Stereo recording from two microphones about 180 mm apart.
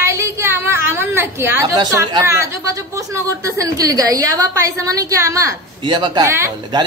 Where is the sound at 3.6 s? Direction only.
20° right (ahead or behind).